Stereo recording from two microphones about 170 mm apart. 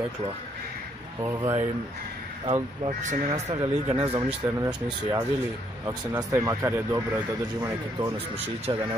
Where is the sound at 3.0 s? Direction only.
45° right (ahead or behind).